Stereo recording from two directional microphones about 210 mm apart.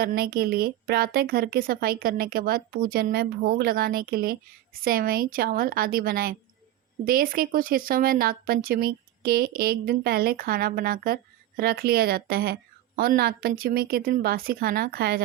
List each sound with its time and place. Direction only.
0.0 s speech: 45° right (ahead or behind)